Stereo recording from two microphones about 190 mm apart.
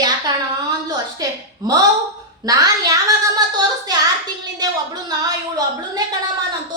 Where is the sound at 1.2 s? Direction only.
20° right (ahead or behind).